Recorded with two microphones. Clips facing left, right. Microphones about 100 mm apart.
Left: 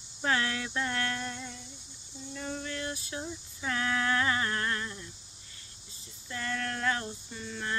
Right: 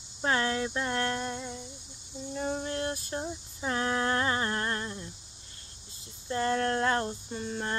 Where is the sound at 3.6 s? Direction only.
30° right (ahead or behind).